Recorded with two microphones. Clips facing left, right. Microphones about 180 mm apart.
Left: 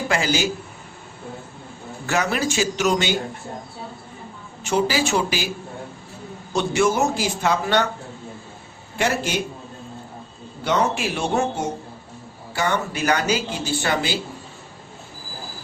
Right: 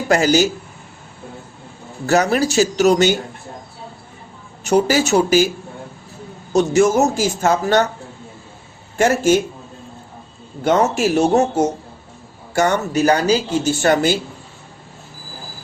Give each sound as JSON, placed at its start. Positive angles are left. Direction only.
{"t": 0.1, "sound": "speech", "side_deg": -40}
{"t": 2.0, "sound": "speech", "side_deg": -40}
{"t": 4.6, "sound": "speech", "side_deg": -45}
{"t": 6.5, "sound": "speech", "side_deg": -40}
{"t": 9.0, "sound": "speech", "side_deg": -45}
{"t": 10.6, "sound": "speech", "side_deg": -45}